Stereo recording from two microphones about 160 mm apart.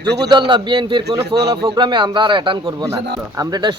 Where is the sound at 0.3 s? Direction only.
30° right (ahead or behind).